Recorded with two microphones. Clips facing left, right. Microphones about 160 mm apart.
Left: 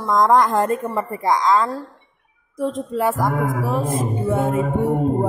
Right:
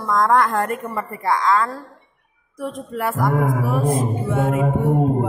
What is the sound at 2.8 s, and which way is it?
Music, 20° left (ahead or behind).